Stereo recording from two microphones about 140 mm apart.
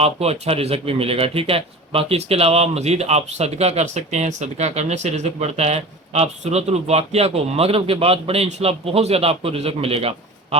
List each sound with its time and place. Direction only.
0.0 s speech: 45° right (ahead or behind)